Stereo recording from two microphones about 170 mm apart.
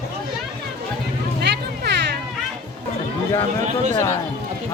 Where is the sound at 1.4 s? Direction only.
80° right.